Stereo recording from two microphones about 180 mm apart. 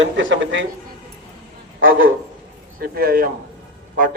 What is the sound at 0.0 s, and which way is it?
Speech, 90° right.